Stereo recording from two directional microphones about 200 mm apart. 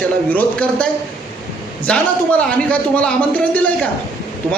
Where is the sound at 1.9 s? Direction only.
5° left (ahead or behind).